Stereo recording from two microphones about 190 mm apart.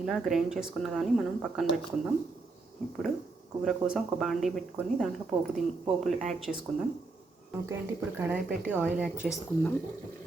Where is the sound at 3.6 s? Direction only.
Centre (ahead or behind).